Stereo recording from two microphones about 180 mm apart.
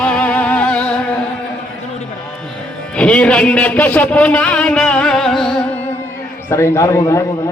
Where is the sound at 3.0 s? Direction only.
5° left (ahead or behind).